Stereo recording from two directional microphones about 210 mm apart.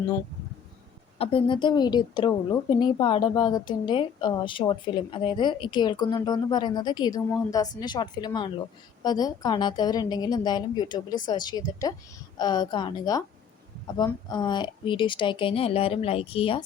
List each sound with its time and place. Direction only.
1.2 s a woman's voice: 25° left (ahead or behind)